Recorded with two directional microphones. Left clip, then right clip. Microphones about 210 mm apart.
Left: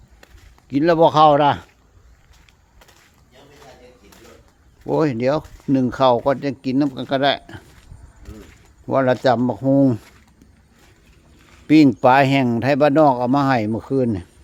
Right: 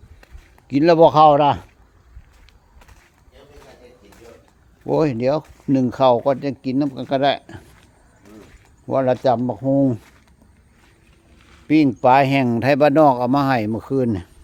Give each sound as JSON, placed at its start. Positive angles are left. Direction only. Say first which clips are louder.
{"t": 0.7, "sound": "speech", "louder": "right 2 dB", "side_deg": -15}
{"t": 4.9, "sound": "speech", "louder": "even", "side_deg": -5}
{"t": 8.9, "sound": "speech", "louder": "left 1 dB", "side_deg": 5}
{"t": 11.7, "sound": "speech", "louder": "left 1 dB", "side_deg": 20}
{"t": 12.4, "sound": "speech", "louder": "right 1 dB", "side_deg": -5}